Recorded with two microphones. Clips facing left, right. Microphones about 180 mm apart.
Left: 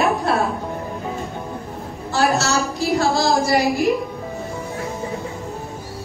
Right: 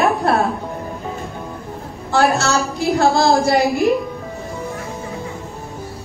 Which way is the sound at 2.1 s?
55° right (ahead or behind).